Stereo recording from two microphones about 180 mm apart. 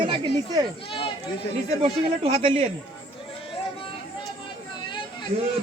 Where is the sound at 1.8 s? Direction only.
30° right (ahead or behind).